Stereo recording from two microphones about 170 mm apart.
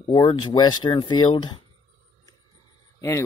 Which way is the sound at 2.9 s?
15° left (ahead or behind).